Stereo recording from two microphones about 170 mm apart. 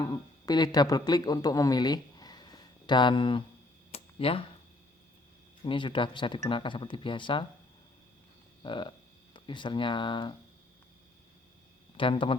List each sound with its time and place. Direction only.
0.0 s speech: 20° left (ahead or behind)
3.9 s a sound: 35° left (ahead or behind)
5.6 s speech: 30° left (ahead or behind)
8.6 s speech: 30° left (ahead or behind)
11.9 s speech: 30° left (ahead or behind)